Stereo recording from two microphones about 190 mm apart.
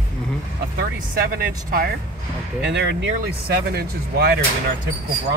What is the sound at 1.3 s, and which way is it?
Speech, 50° right (ahead or behind).